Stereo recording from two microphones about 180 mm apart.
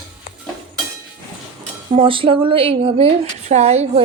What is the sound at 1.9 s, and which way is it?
Speech, 30° right (ahead or behind).